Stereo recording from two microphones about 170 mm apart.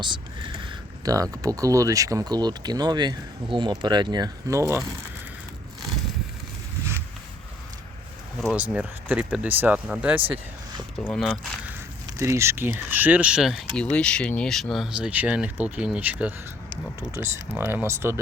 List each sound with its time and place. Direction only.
0.0 s speech: 30° right (ahead or behind)
8.4 s speech: 5° right (ahead or behind)
10.9 s speech: 5° left (ahead or behind)
12.1 s speech: 15° right (ahead or behind)